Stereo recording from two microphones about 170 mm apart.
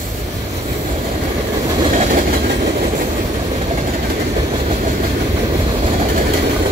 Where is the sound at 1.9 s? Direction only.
50° right (ahead or behind).